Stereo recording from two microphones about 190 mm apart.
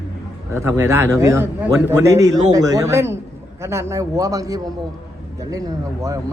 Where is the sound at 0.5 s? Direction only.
15° right (ahead or behind).